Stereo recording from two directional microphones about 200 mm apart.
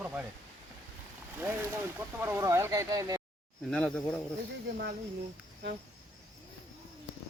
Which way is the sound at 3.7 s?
5° left (ahead or behind).